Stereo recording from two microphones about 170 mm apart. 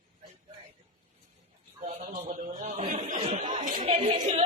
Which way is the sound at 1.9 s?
40° right (ahead or behind).